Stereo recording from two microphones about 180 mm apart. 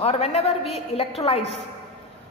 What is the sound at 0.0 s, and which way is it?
A woman's voice, 35° left (ahead or behind).